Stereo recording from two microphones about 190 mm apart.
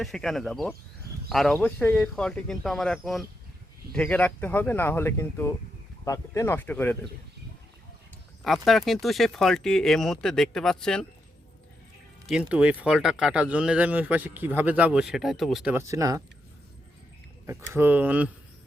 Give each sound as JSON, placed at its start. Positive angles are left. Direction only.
{"t": 0.0, "sound": "speech", "side_deg": 0}
{"t": 8.4, "sound": "speech", "side_deg": 0}
{"t": 12.2, "sound": "speech", "side_deg": -5}
{"t": 15.7, "sound": "speech", "side_deg": -15}
{"t": 17.4, "sound": "speech", "side_deg": -15}